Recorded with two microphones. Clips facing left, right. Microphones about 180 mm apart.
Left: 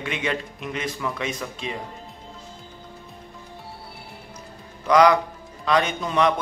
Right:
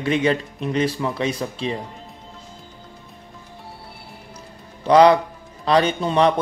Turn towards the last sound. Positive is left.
turn(degrees=-30)  # may be behind; listen again after turning